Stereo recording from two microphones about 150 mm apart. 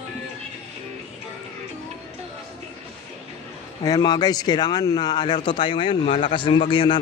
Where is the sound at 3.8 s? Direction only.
25° left (ahead or behind).